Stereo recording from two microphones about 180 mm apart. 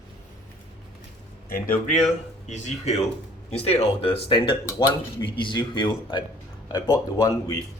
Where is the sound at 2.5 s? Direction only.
40° left (ahead or behind).